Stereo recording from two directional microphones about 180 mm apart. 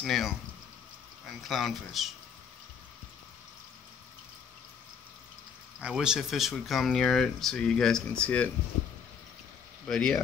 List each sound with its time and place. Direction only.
0.0 s speech: centre (ahead or behind)
1.5 s speech: centre (ahead or behind)
5.8 s speech: 5° right (ahead or behind)
9.8 s speech: centre (ahead or behind)